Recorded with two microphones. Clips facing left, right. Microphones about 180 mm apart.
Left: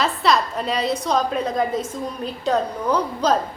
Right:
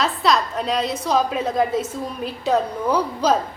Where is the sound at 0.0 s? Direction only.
Centre (ahead or behind).